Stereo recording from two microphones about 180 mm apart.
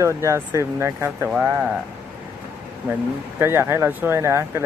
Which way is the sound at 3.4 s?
15° right (ahead or behind).